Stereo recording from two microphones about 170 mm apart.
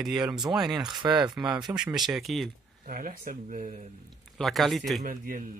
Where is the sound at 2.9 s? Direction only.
50° right (ahead or behind).